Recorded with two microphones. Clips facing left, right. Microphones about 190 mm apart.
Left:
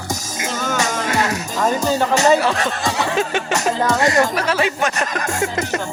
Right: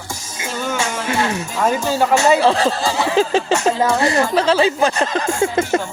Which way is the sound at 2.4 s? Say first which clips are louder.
Right 4 dB; 30° right (ahead or behind).